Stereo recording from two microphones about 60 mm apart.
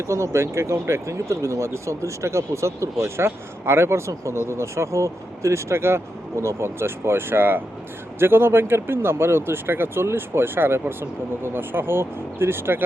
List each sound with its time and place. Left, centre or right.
0.1 s speech: right